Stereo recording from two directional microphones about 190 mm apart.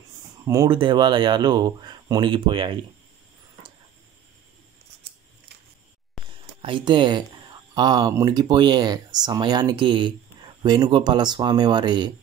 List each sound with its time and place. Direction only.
0.5 s speech: 20° right (ahead or behind)
6.6 s speech: 25° right (ahead or behind)